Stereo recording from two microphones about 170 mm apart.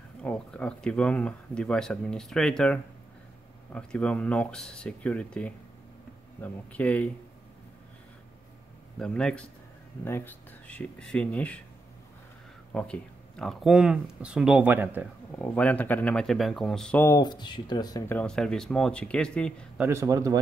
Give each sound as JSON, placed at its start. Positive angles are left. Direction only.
{"t": 0.2, "sound": "speech", "side_deg": 5}
{"t": 8.9, "sound": "speech", "side_deg": 5}
{"t": 12.7, "sound": "speech", "side_deg": 5}
{"t": 15.3, "sound": "speech", "side_deg": 10}
{"t": 17.0, "sound": "speech", "side_deg": 20}
{"t": 18.1, "sound": "speech", "side_deg": 5}
{"t": 19.8, "sound": "speech", "side_deg": -15}